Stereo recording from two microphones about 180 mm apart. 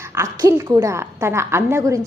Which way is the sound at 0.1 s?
15° right (ahead or behind).